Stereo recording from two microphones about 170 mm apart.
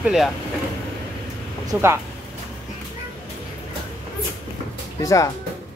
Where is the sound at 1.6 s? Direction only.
15° right (ahead or behind).